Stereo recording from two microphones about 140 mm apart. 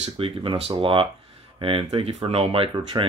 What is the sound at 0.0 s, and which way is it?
Speech, 40° right (ahead or behind).